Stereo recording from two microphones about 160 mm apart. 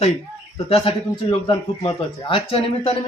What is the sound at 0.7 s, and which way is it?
Speech, 30° left (ahead or behind).